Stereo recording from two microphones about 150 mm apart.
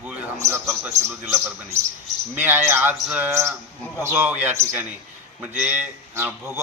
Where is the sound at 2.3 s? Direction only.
15° right (ahead or behind).